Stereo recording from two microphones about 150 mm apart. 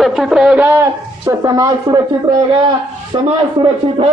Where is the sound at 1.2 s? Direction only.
25° right (ahead or behind).